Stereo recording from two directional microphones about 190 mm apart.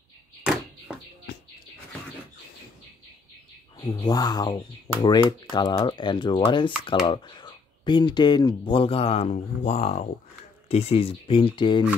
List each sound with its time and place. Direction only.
3.8 s speech: 20° left (ahead or behind)